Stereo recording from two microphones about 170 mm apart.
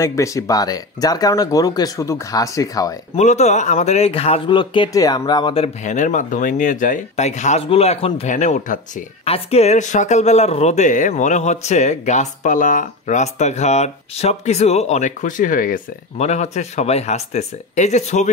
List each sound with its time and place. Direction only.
0.0 s speech: 15° left (ahead or behind)
3.2 s a man's voice: 40° left (ahead or behind)
9.2 s speech: 35° left (ahead or behind)